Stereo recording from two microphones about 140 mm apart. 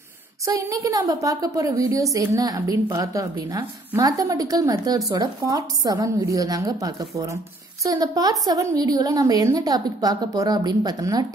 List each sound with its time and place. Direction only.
0.5 s a woman's voice: 25° right (ahead or behind)